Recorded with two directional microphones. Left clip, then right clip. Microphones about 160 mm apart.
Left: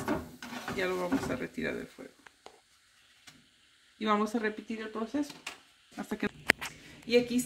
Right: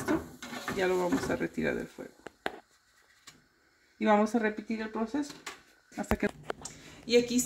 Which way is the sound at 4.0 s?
45° right (ahead or behind).